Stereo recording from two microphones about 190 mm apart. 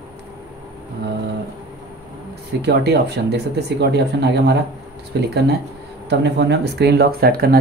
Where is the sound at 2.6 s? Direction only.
60° right (ahead or behind).